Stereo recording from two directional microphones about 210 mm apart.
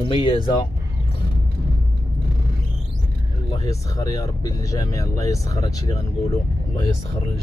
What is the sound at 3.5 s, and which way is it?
Speech, 15° left (ahead or behind).